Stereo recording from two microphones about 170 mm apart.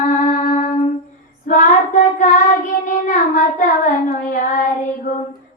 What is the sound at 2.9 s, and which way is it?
Child singing, 50° left (ahead or behind).